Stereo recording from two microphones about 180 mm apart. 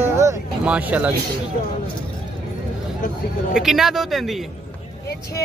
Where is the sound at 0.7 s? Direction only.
10° right (ahead or behind).